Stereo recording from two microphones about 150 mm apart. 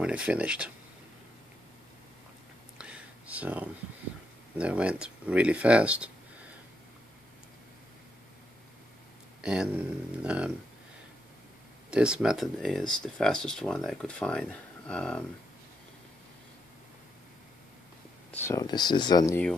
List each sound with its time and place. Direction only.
0.0 s speech: 5° right (ahead or behind)
2.8 s a sound: 10° right (ahead or behind)
4.6 s speech: 10° right (ahead or behind)
9.4 s speech: 5° right (ahead or behind)
11.9 s speech: 5° right (ahead or behind)
18.3 s speech: 15° left (ahead or behind)
18.6 s speech: 30° left (ahead or behind)